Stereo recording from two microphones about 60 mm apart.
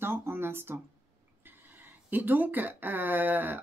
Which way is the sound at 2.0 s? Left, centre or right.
Right.